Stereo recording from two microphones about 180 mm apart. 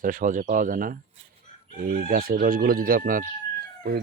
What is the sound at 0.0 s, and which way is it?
Speech, 45° right (ahead or behind).